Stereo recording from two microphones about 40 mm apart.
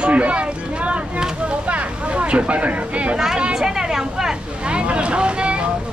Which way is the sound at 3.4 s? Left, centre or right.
Centre.